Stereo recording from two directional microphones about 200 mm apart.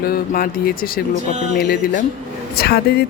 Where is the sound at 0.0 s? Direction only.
45° left (ahead or behind).